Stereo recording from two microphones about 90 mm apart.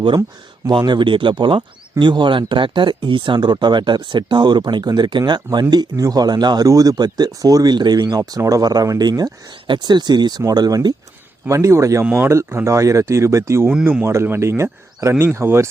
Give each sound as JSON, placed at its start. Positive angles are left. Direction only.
{"t": 0.7, "sound": "speech", "side_deg": -60}
{"t": 8.2, "sound": "speech", "side_deg": -40}
{"t": 9.6, "sound": "speech", "side_deg": -55}
{"t": 11.4, "sound": "speech", "side_deg": -30}